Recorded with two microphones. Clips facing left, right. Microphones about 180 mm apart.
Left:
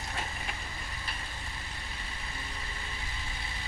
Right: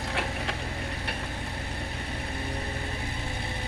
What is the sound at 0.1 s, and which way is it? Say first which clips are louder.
Vehicle: right 7 dB; 75° right (ahead or behind).